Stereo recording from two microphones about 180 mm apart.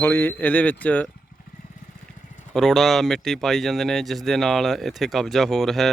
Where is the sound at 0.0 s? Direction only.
10° left (ahead or behind).